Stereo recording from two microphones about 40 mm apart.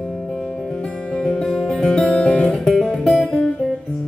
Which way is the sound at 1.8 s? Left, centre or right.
Centre.